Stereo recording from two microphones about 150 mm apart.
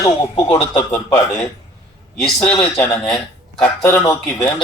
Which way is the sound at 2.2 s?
5° left (ahead or behind).